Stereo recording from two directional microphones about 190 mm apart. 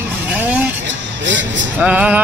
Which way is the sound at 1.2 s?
75° right (ahead or behind).